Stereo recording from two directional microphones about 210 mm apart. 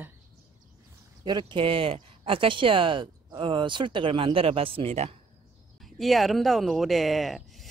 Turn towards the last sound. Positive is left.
turn(degrees=0)  # may be behind; listen again after turning